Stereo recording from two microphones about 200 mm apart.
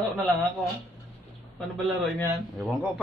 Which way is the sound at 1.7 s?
Centre (ahead or behind).